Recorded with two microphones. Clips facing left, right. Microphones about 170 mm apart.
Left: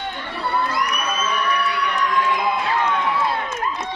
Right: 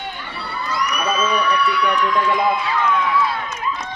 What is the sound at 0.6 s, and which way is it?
Crowd, 55° left (ahead or behind).